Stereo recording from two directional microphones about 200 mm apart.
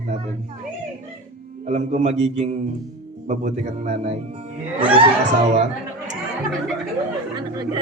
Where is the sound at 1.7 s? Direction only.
35° right (ahead or behind).